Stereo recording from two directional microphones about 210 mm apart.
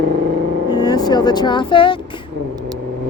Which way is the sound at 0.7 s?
20° left (ahead or behind).